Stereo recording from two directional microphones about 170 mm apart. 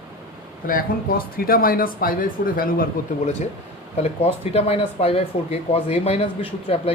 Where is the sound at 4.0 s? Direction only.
35° left (ahead or behind).